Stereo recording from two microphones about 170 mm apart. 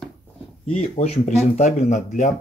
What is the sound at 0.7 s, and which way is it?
Speech, 40° left (ahead or behind).